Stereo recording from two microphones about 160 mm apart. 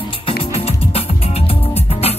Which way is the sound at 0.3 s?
35° left (ahead or behind).